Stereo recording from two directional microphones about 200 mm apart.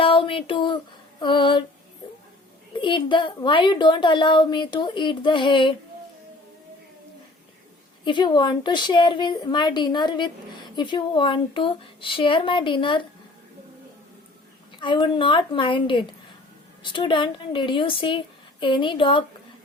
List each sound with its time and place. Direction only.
0.0 s a sound: 25° left (ahead or behind)
1.2 s a woman's voice: 25° left (ahead or behind)
2.7 s a woman's voice: 25° left (ahead or behind)
8.0 s a woman's voice: 20° left (ahead or behind)
14.8 s a woman's voice: 25° left (ahead or behind)